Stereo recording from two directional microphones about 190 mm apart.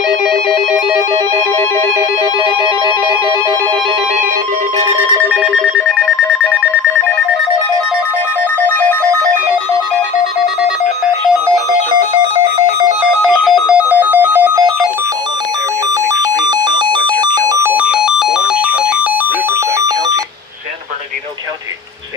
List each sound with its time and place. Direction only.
2.6 s music: 25° right (ahead or behind)
5.3 s telephone: 5° right (ahead or behind)
13.2 s telephone bell ringing: centre (ahead or behind)
16.4 s a sound: 20° right (ahead or behind); by 18.4 s centre (ahead or behind)